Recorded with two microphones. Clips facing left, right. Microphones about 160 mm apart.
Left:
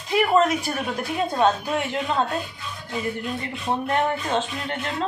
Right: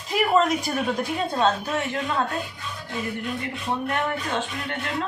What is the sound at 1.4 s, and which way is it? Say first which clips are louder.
Speech: left 2 dB; 20° left (ahead or behind).